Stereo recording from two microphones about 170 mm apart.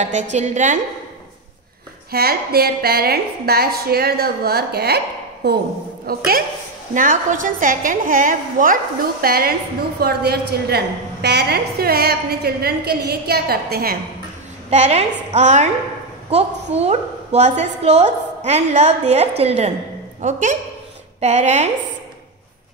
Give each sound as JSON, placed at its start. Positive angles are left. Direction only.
{"t": 0.0, "sound": "a woman's voice", "side_deg": -45}
{"t": 2.0, "sound": "a woman's voice", "side_deg": -65}
{"t": 6.9, "sound": "a woman's voice", "side_deg": -50}
{"t": 14.7, "sound": "a woman's voice", "side_deg": -40}
{"t": 16.7, "sound": "a woman's voice", "side_deg": -40}